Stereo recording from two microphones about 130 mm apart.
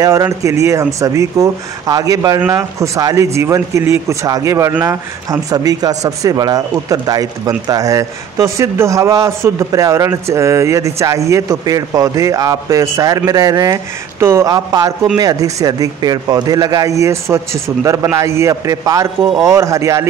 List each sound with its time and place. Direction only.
0.0 s speech: 25° right (ahead or behind)